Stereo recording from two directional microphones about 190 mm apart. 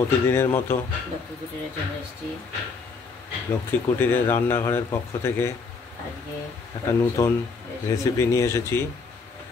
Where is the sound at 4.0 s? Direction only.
10° left (ahead or behind).